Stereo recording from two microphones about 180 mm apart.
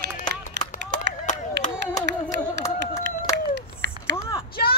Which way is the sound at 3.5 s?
75° right (ahead or behind).